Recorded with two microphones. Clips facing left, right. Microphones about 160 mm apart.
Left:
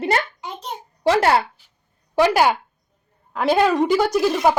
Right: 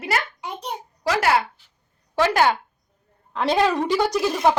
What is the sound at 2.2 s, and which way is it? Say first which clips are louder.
A woman's voice: left 3 dB; 15° left (ahead or behind).